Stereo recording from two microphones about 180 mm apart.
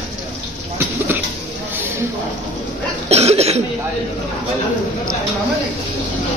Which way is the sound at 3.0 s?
35° right (ahead or behind).